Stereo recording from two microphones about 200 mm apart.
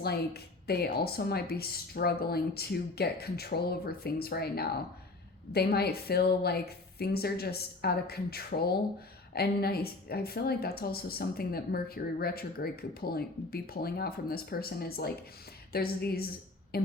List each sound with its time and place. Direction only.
0.0 s speech: 50° left (ahead or behind)